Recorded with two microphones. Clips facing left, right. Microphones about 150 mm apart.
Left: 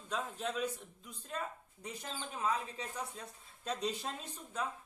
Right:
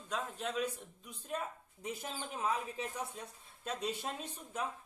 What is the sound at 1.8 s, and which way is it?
Speech, 10° right (ahead or behind).